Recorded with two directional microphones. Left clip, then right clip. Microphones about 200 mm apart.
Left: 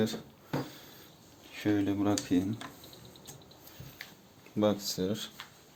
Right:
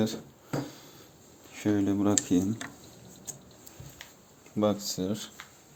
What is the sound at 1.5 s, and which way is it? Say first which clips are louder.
Speech: right 2 dB; 20° right (ahead or behind).